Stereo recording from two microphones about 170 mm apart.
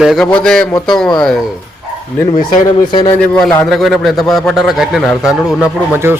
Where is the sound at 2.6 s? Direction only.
30° left (ahead or behind).